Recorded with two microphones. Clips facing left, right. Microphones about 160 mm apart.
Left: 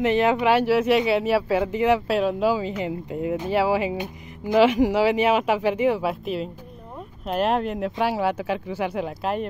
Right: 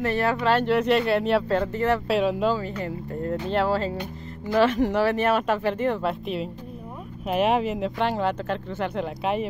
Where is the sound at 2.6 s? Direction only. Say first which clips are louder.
Left 3 dB; 15° left (ahead or behind).